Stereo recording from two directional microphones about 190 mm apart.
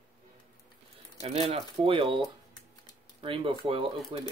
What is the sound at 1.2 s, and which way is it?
Speech, 30° right (ahead or behind).